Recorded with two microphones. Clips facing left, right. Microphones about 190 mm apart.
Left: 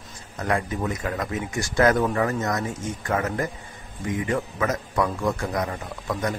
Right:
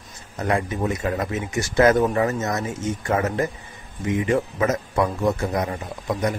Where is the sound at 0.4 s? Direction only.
25° right (ahead or behind).